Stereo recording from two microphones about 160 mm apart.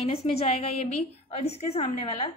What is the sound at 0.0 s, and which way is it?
A woman's voice, 40° left (ahead or behind).